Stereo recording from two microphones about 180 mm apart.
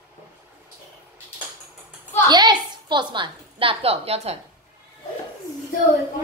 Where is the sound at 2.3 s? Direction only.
25° right (ahead or behind).